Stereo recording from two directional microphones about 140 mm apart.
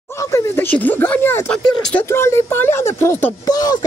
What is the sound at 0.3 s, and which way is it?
Speech, 15° left (ahead or behind).